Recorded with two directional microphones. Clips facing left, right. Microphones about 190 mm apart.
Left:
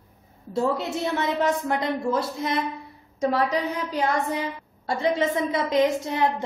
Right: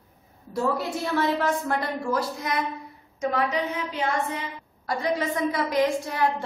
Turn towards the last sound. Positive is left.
turn(degrees=20)  # may be behind; listen again after turning